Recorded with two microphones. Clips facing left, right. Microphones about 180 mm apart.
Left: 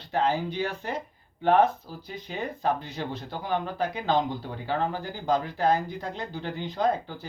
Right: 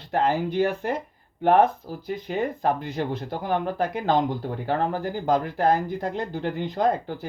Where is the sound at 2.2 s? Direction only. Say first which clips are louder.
Right 4 dB; 55° right (ahead or behind).